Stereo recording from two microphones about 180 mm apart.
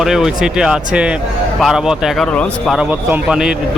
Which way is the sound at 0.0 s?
Centre (ahead or behind).